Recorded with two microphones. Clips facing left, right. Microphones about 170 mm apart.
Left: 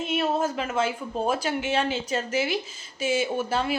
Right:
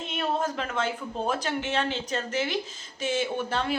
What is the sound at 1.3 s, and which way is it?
A man's voice, 10° left (ahead or behind).